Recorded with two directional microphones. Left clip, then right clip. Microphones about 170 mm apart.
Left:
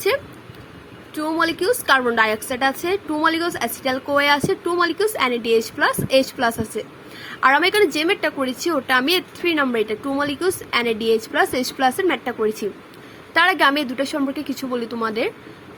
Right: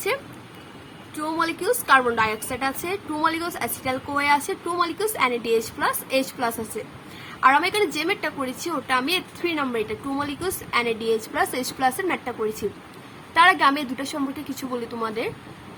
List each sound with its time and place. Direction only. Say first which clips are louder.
1.1 s a woman's voice: left 4 dB; 30° left (ahead or behind)